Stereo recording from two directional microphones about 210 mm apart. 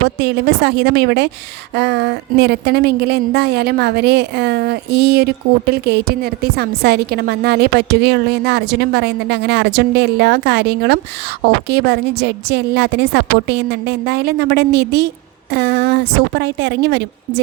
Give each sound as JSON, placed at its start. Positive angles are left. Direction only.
{"t": 0.2, "sound": "a woman's voice", "side_deg": -50}